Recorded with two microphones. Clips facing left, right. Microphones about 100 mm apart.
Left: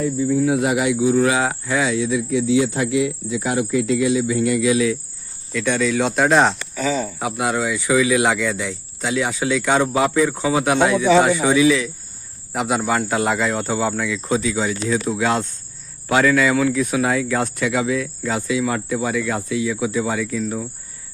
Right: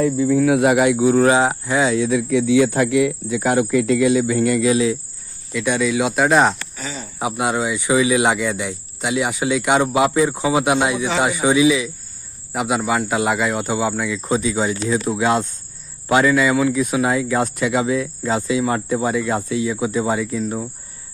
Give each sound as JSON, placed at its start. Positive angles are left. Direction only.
{"t": 0.0, "sound": "cricket", "side_deg": -85}
{"t": 1.4, "sound": "speech", "side_deg": -20}
{"t": 1.9, "sound": "cricket", "side_deg": -55}
{"t": 4.7, "sound": "speech", "side_deg": -25}
{"t": 5.5, "sound": "speech", "side_deg": -10}
{"t": 7.2, "sound": "speech", "side_deg": -20}
{"t": 12.5, "sound": "speech", "side_deg": 0}
{"t": 14.2, "sound": "speech", "side_deg": -20}